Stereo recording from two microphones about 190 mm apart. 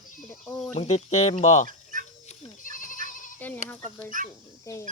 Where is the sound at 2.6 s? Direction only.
45° left (ahead or behind).